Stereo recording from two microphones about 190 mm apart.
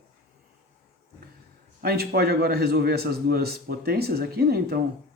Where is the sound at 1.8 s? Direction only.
55° right (ahead or behind).